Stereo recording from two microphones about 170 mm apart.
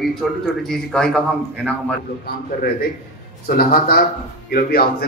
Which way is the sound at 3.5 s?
60° left (ahead or behind).